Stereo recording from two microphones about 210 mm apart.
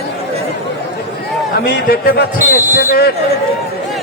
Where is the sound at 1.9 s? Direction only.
50° left (ahead or behind).